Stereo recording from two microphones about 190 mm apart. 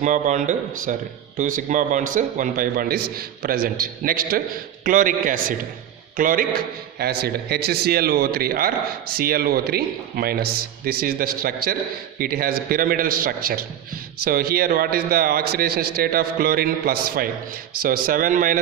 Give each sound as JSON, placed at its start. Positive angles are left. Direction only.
{"t": 0.0, "sound": "a man's voice", "side_deg": -40}